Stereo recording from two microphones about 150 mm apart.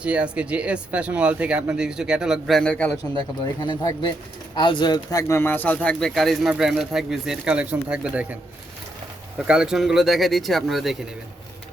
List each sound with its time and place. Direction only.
0.0 s speech: 10° right (ahead or behind); by 3.0 s 10° left (ahead or behind)
3.4 s speech: 30° left (ahead or behind); by 8.4 s 10° right (ahead or behind)
9.5 s speech: 5° right (ahead or behind)